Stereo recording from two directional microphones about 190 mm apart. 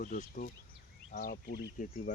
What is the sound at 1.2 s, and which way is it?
Speech, 55° left (ahead or behind).